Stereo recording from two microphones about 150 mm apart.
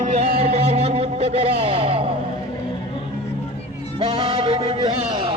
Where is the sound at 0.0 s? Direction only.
45° right (ahead or behind).